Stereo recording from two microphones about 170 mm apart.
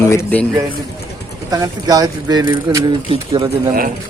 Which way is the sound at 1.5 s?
20° right (ahead or behind).